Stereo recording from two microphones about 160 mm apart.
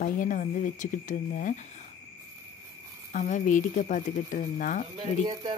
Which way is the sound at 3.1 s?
50° left (ahead or behind).